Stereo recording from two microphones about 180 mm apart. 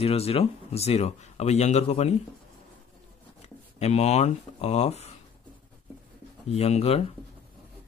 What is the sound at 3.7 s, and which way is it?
Speech, 35° left (ahead or behind).